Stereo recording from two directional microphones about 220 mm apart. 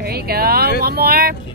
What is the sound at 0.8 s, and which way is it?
Vehicle, 45° right (ahead or behind).